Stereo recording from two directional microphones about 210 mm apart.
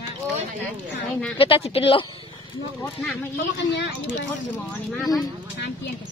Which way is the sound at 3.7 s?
60° left (ahead or behind).